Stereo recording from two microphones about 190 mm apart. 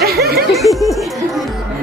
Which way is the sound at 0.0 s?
55° right (ahead or behind).